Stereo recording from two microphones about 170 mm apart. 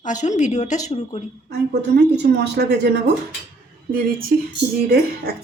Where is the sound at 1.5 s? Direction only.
75° right (ahead or behind).